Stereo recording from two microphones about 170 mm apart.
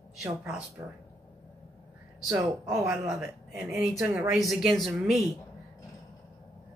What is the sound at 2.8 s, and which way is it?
Speech, 5° right (ahead or behind).